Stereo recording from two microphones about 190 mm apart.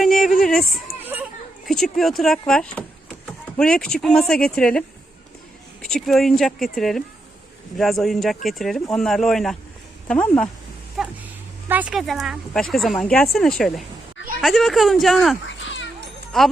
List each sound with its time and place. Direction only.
0.0 s a sound: centre (ahead or behind)
1.6 s speech: centre (ahead or behind)
15.4 s cat: 75° left (ahead or behind)
16.3 s speech: centre (ahead or behind)